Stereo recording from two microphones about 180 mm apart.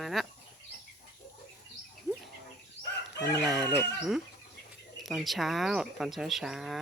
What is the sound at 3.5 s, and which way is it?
Speech, 20° right (ahead or behind).